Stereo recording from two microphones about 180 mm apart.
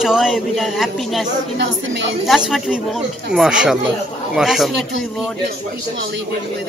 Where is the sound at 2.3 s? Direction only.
5° right (ahead or behind).